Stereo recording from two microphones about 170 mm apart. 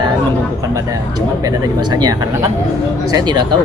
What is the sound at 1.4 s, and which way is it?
Speech, 25° right (ahead or behind).